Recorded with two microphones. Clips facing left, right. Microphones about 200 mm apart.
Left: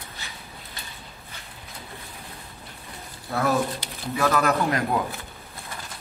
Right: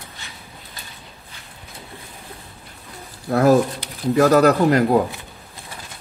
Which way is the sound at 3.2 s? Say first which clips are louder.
Right 9 dB; 45° right (ahead or behind).